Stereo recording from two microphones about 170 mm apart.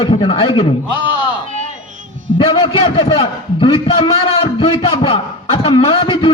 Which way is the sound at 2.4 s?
35° left (ahead or behind).